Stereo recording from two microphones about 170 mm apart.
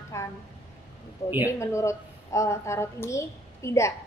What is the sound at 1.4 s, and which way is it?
A woman's voice, 15° left (ahead or behind).